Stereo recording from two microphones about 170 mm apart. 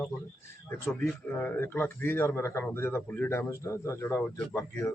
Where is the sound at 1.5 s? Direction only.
15° left (ahead or behind).